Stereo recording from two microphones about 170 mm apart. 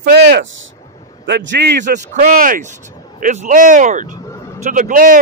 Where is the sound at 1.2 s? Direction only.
90° right.